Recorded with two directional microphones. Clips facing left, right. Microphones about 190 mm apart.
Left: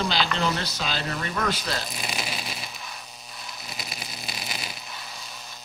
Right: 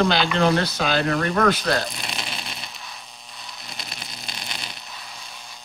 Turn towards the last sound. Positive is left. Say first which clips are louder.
# left 1 dB
turn(degrees=5)  # may be behind; listen again after turning